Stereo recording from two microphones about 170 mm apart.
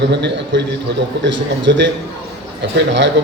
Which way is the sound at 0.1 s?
90° right.